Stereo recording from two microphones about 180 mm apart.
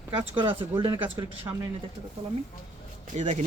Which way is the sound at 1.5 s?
15° right (ahead or behind).